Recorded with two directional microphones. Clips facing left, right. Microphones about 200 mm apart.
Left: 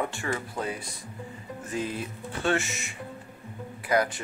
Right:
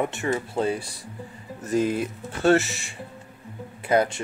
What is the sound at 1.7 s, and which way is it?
Speech, 45° right (ahead or behind).